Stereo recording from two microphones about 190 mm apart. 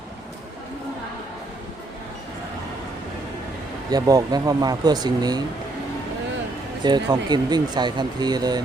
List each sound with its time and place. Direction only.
3.8 s speech: 20° right (ahead or behind)
6.8 s speech: 20° right (ahead or behind)